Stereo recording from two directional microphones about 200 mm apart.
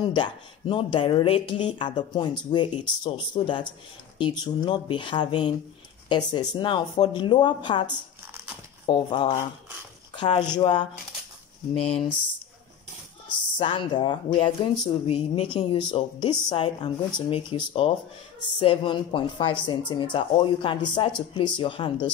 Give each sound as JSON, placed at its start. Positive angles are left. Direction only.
{"t": 0.0, "sound": "speech", "side_deg": 25}
{"t": 13.6, "sound": "speech", "side_deg": 25}